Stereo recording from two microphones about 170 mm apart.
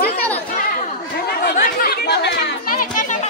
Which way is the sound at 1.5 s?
55° left (ahead or behind).